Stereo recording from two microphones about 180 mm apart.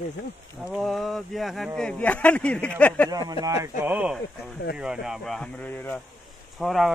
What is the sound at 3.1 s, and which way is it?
Speech, 20° right (ahead or behind).